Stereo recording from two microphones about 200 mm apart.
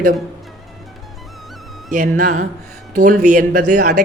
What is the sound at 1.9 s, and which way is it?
A man's voice, 45° right (ahead or behind).